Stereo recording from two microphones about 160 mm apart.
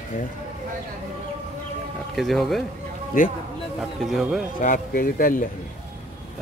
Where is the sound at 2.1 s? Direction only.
Centre (ahead or behind).